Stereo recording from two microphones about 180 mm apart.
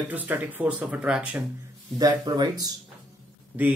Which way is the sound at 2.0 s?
20° right (ahead or behind).